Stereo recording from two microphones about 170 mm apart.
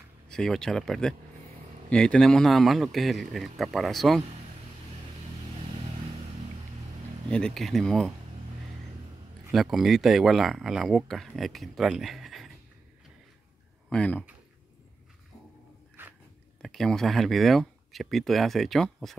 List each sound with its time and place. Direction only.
0.3 s speech: 5° left (ahead or behind)
7.2 s speech: 5° left (ahead or behind)
9.5 s speech: centre (ahead or behind)
13.8 s speech: 5° left (ahead or behind)
16.0 s biting: 10° right (ahead or behind)
16.6 s speech: centre (ahead or behind)